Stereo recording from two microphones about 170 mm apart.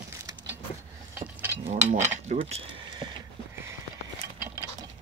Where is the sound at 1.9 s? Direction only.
45° right (ahead or behind).